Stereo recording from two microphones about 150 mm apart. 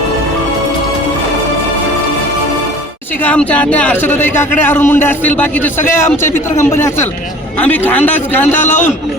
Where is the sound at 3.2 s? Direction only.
10° left (ahead or behind).